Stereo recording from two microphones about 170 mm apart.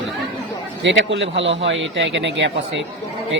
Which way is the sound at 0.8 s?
90° right.